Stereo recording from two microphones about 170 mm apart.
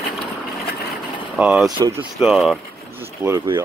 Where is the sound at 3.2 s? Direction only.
15° right (ahead or behind).